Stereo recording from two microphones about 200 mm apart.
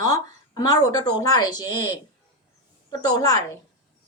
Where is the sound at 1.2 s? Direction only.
20° left (ahead or behind).